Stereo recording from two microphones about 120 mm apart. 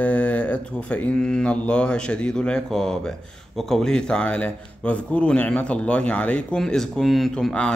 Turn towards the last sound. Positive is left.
turn(degrees=10)  # may be behind; listen again after turning